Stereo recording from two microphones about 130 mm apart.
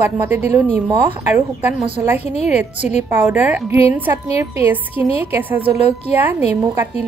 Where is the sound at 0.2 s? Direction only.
15° right (ahead or behind).